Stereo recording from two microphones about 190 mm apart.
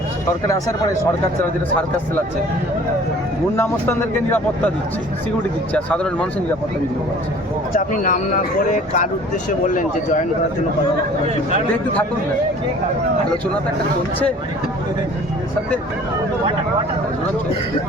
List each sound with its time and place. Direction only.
3.5 s speech: 10° left (ahead or behind)
5.7 s speech: 5° left (ahead or behind)
7.7 s speech: 45° left (ahead or behind)